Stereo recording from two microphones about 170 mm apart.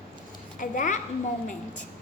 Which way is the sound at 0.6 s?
50° left (ahead or behind).